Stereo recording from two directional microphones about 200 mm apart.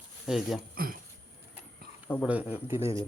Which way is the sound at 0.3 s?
Centre (ahead or behind).